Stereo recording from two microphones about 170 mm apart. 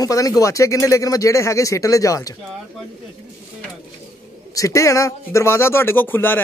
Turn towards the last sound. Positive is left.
turn(degrees=10)  # may be behind; listen again after turning